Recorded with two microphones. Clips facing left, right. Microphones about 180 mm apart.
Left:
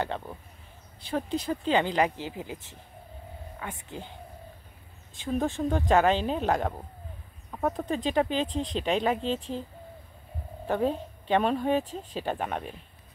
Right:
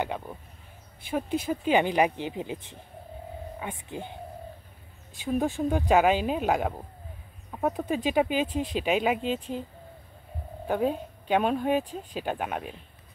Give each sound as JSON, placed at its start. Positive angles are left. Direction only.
{"t": 0.0, "sound": "speech", "side_deg": -10}
{"t": 5.2, "sound": "speech", "side_deg": -10}
{"t": 10.7, "sound": "speech", "side_deg": -5}